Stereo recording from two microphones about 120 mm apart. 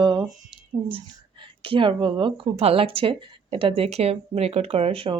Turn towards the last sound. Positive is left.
turn(degrees=-50)  # may be behind; listen again after turning